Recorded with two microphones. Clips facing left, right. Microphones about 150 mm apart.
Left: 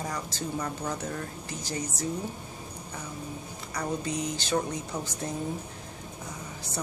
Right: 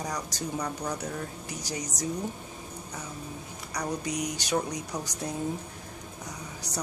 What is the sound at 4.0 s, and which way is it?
Speech, 15° right (ahead or behind).